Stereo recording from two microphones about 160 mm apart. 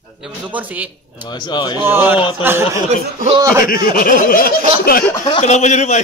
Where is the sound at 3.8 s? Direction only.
65° left (ahead or behind).